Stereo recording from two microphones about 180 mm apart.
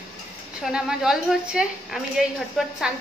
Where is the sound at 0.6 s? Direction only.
5° right (ahead or behind).